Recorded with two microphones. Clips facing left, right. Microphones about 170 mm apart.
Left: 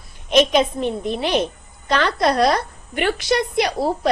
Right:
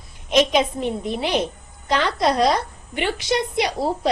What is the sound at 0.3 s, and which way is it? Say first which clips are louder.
A woman's voice: left 2 dB; 15° right (ahead or behind).